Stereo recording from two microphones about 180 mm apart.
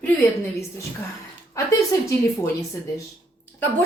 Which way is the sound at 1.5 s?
15° left (ahead or behind).